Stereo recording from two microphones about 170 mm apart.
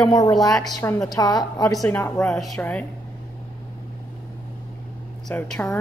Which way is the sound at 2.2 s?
5° left (ahead or behind).